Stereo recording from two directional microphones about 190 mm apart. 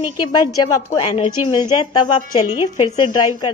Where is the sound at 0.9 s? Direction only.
30° left (ahead or behind).